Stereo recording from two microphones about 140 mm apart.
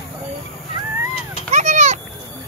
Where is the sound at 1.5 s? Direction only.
60° right (ahead or behind).